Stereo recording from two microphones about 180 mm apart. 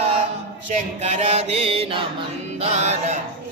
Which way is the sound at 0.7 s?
40° right (ahead or behind).